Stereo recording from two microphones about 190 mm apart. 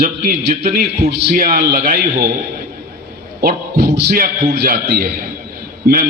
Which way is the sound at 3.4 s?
55° right (ahead or behind).